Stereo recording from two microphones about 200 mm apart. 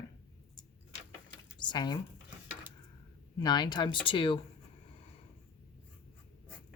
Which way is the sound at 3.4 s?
20° left (ahead or behind).